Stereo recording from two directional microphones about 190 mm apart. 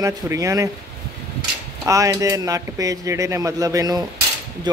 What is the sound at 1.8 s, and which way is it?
Speech, 15° right (ahead or behind).